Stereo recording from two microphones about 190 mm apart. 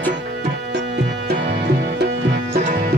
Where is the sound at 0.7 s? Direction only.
60° right (ahead or behind).